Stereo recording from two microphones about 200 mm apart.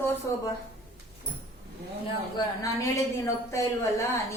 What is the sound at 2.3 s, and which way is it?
A woman's voice, 15° left (ahead or behind).